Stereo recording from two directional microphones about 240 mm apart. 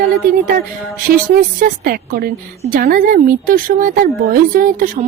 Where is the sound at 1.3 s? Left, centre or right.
Right.